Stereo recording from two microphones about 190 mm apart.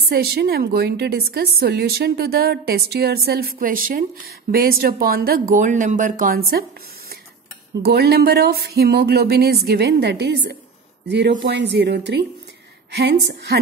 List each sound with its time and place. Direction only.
0.1 s a woman's voice: 55° right (ahead or behind)
5.5 s speech: 40° right (ahead or behind)
7.8 s a woman's voice: 55° right (ahead or behind)